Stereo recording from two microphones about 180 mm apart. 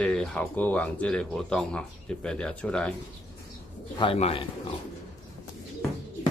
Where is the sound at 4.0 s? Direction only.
30° left (ahead or behind).